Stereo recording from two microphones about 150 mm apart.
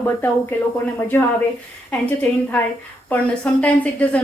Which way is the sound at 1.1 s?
15° left (ahead or behind).